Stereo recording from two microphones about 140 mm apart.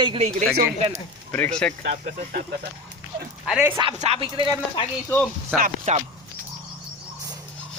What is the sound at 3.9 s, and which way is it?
Speech, 45° right (ahead or behind).